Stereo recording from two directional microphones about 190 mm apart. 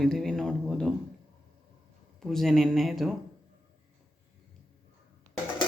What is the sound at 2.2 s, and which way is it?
Speech, centre (ahead or behind).